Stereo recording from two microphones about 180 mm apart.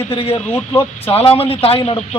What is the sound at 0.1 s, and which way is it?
Speech, 30° left (ahead or behind).